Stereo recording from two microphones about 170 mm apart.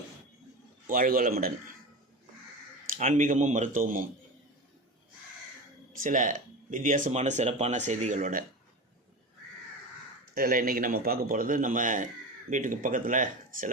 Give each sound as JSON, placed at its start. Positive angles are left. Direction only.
{"t": 0.9, "sound": "a man's voice", "side_deg": -55}
{"t": 2.9, "sound": "speech", "side_deg": -50}
{"t": 6.0, "sound": "speech", "side_deg": -50}
{"t": 10.3, "sound": "a man's voice", "side_deg": -60}